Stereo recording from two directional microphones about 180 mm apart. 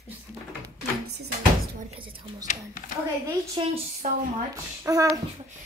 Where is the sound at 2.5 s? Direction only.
50° left (ahead or behind).